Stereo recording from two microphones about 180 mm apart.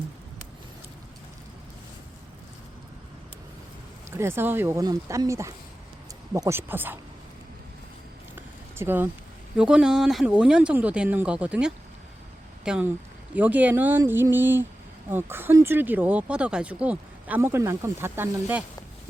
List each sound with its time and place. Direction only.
4.1 s speech: 15° right (ahead or behind)
8.4 s a sound: 10° right (ahead or behind)
9.6 s speech: 5° right (ahead or behind)